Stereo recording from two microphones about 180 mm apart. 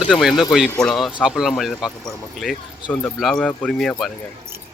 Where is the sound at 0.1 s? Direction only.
Centre (ahead or behind).